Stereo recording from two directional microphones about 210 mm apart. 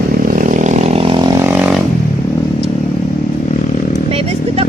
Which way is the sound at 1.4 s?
5° right (ahead or behind).